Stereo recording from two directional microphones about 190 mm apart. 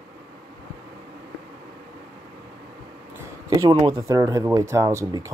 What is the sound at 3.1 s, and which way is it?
Speech, 20° right (ahead or behind).